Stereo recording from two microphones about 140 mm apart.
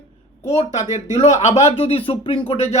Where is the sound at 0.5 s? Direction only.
55° left (ahead or behind).